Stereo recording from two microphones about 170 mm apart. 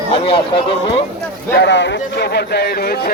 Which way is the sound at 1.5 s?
90° left.